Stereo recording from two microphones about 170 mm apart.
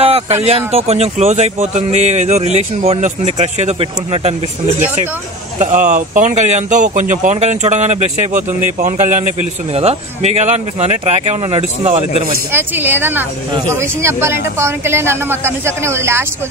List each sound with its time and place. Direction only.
0.0 s speech: 40° right (ahead or behind)
12.5 s speech: 10° right (ahead or behind)